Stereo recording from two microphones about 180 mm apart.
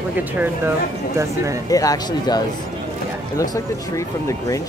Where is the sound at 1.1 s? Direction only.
15° right (ahead or behind).